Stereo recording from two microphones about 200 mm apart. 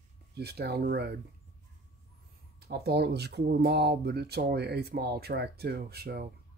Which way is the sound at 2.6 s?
55° right (ahead or behind).